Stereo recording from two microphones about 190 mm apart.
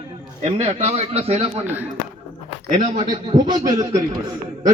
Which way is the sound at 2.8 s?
40° right (ahead or behind).